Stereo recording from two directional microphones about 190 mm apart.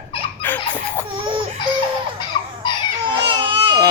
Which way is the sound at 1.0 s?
25° right (ahead or behind).